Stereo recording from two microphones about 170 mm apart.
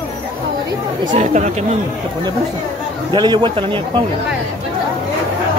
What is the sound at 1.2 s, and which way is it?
Speech, 45° right (ahead or behind).